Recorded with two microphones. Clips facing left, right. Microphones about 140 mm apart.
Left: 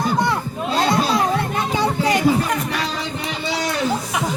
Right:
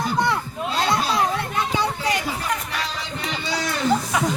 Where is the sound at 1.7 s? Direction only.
50° left (ahead or behind).